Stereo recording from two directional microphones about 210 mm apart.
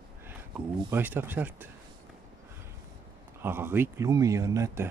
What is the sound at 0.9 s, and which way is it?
Speech, 10° right (ahead or behind).